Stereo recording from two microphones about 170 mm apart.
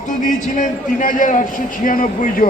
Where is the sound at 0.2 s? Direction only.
50° left (ahead or behind).